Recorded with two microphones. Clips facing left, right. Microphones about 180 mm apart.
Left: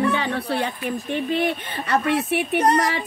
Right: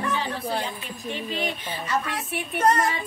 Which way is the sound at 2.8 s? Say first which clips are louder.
Left 3 dB; 80° left.